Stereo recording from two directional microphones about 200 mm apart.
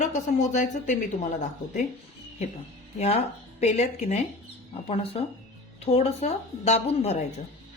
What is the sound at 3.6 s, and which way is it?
A woman's voice, 35° left (ahead or behind).